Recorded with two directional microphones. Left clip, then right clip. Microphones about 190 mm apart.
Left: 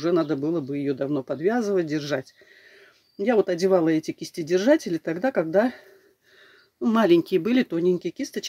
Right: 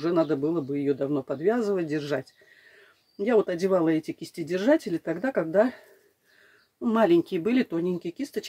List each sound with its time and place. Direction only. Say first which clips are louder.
0.0 s speech: left 1 dB; 30° left (ahead or behind)
6.8 s speech: left 2 dB; 40° left (ahead or behind)